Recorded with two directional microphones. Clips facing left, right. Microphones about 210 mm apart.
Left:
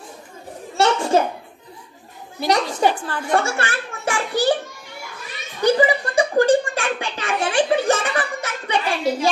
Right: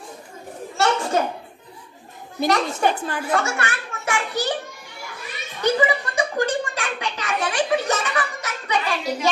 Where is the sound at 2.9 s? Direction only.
20° right (ahead or behind).